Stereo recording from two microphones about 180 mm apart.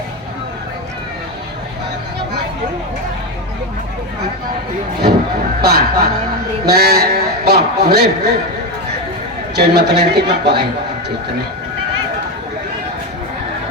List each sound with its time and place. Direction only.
5.6 s a man's voice: 60° right (ahead or behind)
9.6 s a man's voice: 65° right (ahead or behind)